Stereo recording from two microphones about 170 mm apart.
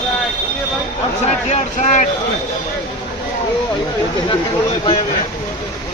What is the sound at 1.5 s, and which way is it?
Speech, 45° left (ahead or behind).